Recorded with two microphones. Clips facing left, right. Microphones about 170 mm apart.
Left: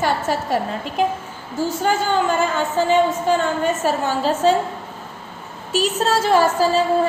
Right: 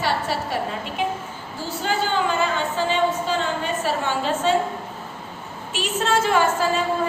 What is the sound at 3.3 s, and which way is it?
A woman's voice, 45° left (ahead or behind).